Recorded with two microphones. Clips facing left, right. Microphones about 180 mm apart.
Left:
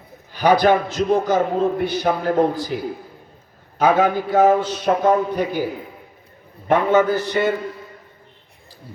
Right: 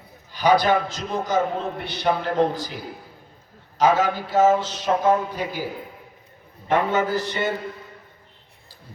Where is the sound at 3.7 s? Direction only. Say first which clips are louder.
Left 3 dB; 55° left (ahead or behind).